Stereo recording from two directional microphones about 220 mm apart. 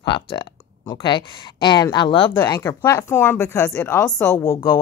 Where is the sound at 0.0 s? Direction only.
20° left (ahead or behind).